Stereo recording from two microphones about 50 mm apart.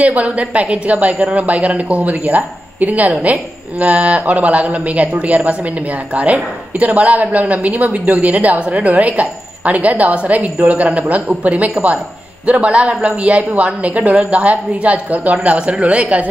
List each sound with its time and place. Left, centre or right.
0.0 s a man's voice: right